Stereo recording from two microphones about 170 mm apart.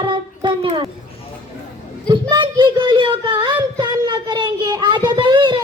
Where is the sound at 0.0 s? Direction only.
30° right (ahead or behind).